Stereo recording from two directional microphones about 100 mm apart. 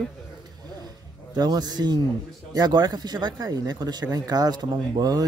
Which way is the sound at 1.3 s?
40° right (ahead or behind).